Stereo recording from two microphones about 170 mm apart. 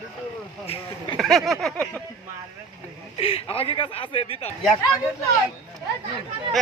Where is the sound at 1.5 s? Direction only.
Centre (ahead or behind).